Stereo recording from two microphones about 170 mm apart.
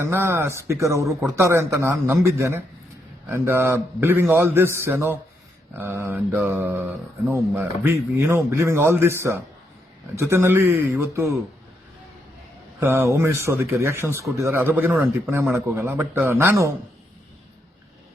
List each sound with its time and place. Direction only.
0.0 s speech: 15° right (ahead or behind)
12.8 s speech: 15° right (ahead or behind)